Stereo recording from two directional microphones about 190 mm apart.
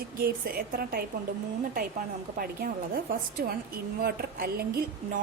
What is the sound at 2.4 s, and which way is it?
A woman's voice, 50° right (ahead or behind).